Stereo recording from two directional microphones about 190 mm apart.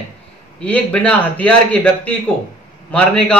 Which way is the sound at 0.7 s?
5° left (ahead or behind).